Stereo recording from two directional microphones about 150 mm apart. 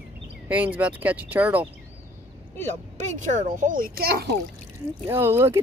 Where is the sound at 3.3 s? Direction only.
60° right (ahead or behind); by 4.3 s 90° right.